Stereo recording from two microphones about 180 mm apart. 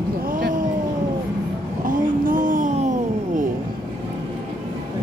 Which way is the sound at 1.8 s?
50° right (ahead or behind).